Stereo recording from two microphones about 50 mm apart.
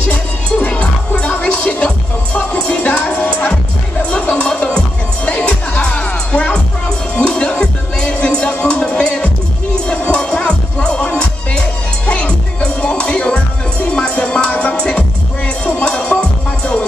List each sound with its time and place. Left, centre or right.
0.0 s music: left